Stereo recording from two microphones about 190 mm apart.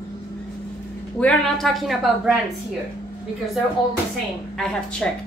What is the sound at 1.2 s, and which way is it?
A woman's voice, centre (ahead or behind).